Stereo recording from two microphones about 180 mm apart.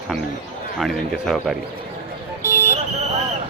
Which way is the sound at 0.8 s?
Centre (ahead or behind).